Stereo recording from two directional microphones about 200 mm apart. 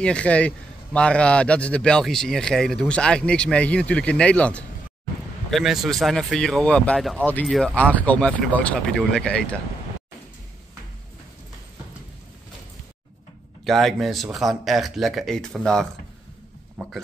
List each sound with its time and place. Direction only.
0.0 s speech: 5° left (ahead or behind)
13.7 s speech: centre (ahead or behind)